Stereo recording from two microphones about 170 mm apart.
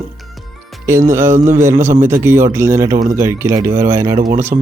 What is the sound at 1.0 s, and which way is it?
Speech, 15° right (ahead or behind).